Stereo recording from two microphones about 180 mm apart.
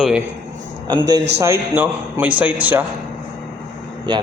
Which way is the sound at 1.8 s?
10° right (ahead or behind).